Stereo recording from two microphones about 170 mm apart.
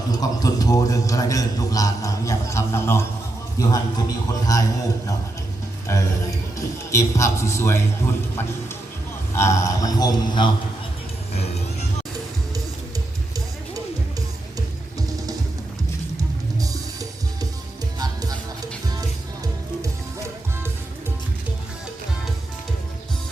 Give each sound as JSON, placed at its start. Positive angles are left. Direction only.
{"t": 0.1, "sound": "a man's voice", "side_deg": 20}
{"t": 6.6, "sound": "a man's voice", "side_deg": 15}
{"t": 16.6, "sound": "music", "side_deg": -20}